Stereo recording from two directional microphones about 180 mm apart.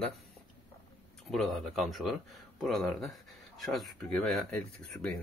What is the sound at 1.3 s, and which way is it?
Speech, centre (ahead or behind).